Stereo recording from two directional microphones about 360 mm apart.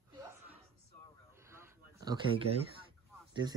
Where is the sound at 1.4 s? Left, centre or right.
Centre.